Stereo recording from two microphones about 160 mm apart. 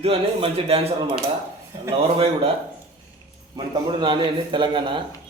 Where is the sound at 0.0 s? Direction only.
35° right (ahead or behind).